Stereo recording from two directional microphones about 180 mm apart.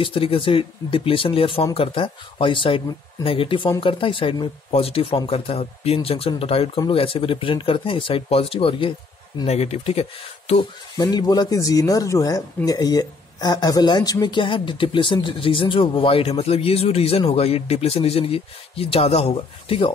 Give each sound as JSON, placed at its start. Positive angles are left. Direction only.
{"t": 0.0, "sound": "speech", "side_deg": 30}
{"t": 11.0, "sound": "speech", "side_deg": 20}